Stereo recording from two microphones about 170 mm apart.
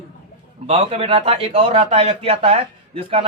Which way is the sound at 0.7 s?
35° right (ahead or behind).